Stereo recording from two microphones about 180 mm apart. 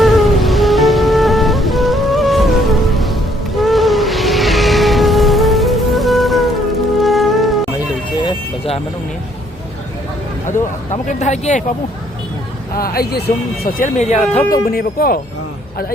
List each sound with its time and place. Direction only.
0.0 s music: centre (ahead or behind)
8.2 s vehicle: 30° left (ahead or behind)
10.9 s speech: 40° left (ahead or behind)
12.7 s speech: 55° left (ahead or behind); by 14.4 s 40° left (ahead or behind)
14.5 s speech: 55° left (ahead or behind)